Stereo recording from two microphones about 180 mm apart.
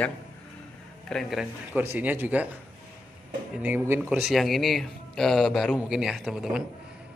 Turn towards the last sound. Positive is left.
turn(degrees=-5)  # may be behind; listen again after turning